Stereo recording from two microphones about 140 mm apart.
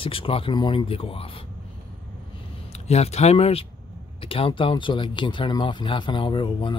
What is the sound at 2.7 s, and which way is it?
Speech, 50° left (ahead or behind).